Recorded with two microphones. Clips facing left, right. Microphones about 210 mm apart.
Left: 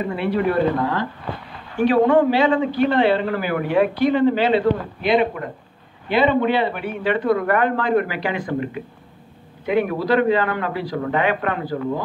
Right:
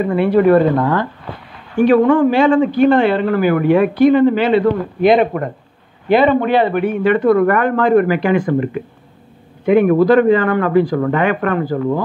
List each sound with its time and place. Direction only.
0.1 s a man's voice: 50° right (ahead or behind)